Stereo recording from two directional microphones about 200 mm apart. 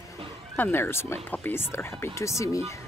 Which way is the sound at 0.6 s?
10° left (ahead or behind).